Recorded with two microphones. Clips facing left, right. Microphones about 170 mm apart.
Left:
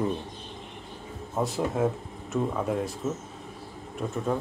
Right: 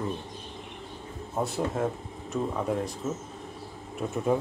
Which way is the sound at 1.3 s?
Centre (ahead or behind).